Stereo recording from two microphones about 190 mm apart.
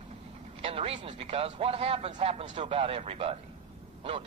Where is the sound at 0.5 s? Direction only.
30° right (ahead or behind).